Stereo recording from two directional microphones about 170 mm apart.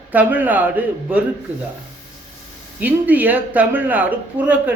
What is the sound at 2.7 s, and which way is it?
Speech, 10° right (ahead or behind).